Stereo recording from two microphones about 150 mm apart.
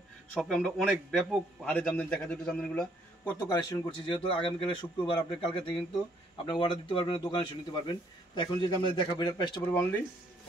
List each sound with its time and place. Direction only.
0.3 s a man's voice: centre (ahead or behind)
3.4 s a man's voice: 30° left (ahead or behind)